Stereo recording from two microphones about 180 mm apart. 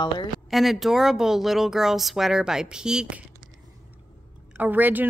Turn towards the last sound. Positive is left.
turn(degrees=-10)  # may be behind; listen again after turning